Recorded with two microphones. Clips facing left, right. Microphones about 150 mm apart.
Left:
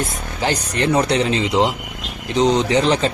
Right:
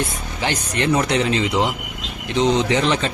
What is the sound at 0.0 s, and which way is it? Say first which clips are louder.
Speech: left 2 dB; 40° left (ahead or behind).